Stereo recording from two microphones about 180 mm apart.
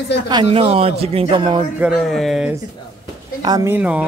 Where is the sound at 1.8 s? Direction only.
Centre (ahead or behind).